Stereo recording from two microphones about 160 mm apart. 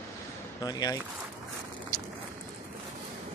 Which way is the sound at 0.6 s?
25° left (ahead or behind).